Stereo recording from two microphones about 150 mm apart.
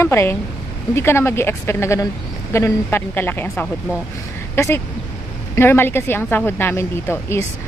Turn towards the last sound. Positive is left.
turn(degrees=15)  # may be behind; listen again after turning